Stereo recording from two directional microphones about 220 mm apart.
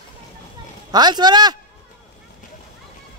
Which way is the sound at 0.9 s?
20° right (ahead or behind).